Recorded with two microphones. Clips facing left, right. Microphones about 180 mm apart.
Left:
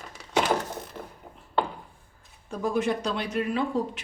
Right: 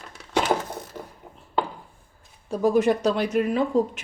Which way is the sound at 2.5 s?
40° right (ahead or behind).